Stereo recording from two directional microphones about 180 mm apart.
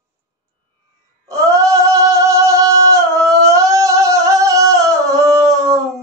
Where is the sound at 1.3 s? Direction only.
15° right (ahead or behind).